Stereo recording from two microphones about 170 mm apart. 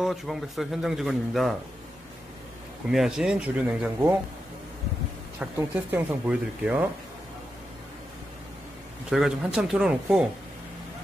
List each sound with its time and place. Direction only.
0.0 s a man's voice: centre (ahead or behind)
2.9 s a man's voice: 5° right (ahead or behind)
5.4 s speech: 10° right (ahead or behind)
9.1 s a man's voice: 5° right (ahead or behind)